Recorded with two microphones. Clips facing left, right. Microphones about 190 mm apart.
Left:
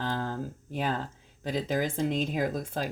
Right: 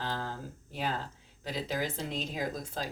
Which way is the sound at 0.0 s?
50° left (ahead or behind).